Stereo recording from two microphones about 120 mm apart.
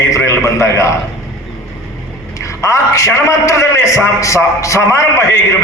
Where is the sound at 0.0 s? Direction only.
25° left (ahead or behind).